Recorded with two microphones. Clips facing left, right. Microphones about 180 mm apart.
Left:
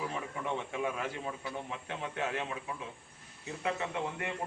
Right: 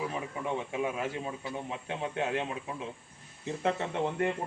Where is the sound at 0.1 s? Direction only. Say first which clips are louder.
Right 2 dB; 15° right (ahead or behind).